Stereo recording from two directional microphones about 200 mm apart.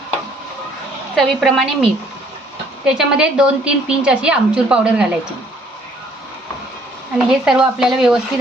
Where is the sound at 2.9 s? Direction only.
5° right (ahead or behind).